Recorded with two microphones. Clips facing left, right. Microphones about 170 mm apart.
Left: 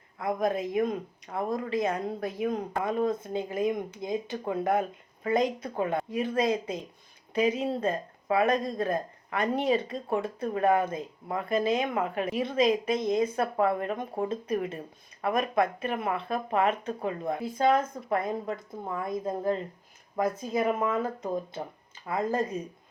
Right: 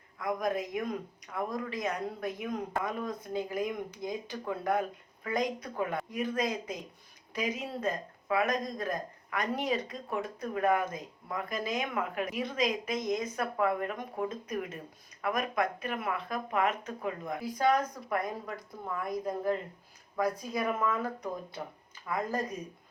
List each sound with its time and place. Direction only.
0.2 s speech: 30° left (ahead or behind)